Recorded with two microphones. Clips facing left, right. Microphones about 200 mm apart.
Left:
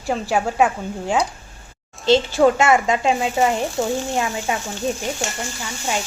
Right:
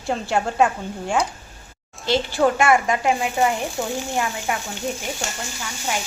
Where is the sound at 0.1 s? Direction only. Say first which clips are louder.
Left 2 dB; 5° left (ahead or behind).